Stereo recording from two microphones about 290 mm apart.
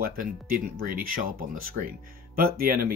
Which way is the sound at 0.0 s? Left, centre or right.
Right.